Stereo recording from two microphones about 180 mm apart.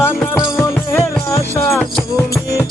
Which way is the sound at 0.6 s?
15° left (ahead or behind).